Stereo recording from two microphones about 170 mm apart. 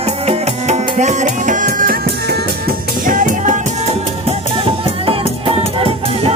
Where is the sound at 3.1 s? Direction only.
50° right (ahead or behind).